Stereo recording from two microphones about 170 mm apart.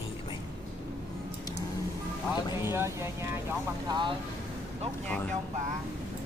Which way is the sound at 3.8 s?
25° right (ahead or behind).